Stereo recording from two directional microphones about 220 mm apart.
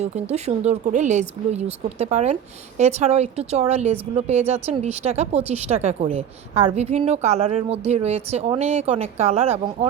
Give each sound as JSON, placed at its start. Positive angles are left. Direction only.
{"t": 0.0, "sound": "a woman's voice", "side_deg": -30}